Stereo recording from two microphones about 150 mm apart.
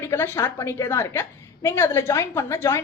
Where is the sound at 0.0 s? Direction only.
15° left (ahead or behind).